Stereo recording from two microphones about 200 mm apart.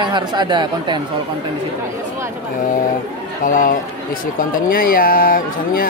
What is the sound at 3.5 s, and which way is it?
Speech, 40° left (ahead or behind).